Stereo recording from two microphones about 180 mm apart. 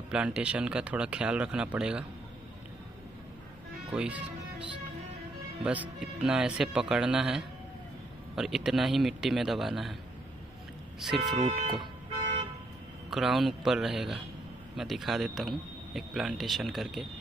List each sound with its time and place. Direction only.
0.1 s speech: 5° right (ahead or behind)
3.9 s speech: 5° right (ahead or behind)
5.6 s speech: 5° right (ahead or behind)
11.0 s speech: centre (ahead or behind)
11.3 s speech: 35° right (ahead or behind)
13.1 s speech: centre (ahead or behind)